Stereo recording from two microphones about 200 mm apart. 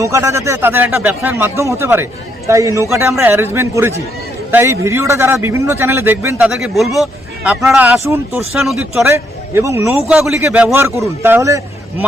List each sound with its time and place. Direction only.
0.0 s a man's voice: 15° right (ahead or behind)
8.6 s a man's voice: centre (ahead or behind)